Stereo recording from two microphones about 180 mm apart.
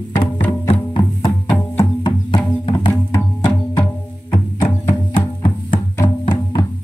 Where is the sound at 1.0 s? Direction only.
20° left (ahead or behind).